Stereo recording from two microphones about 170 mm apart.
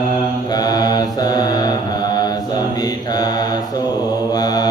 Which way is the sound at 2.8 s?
25° left (ahead or behind).